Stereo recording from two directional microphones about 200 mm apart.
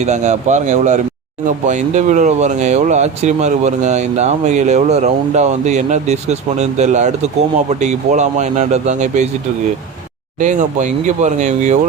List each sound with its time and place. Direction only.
0.0 s speech: 35° right (ahead or behind)
10.4 s speech: 40° right (ahead or behind)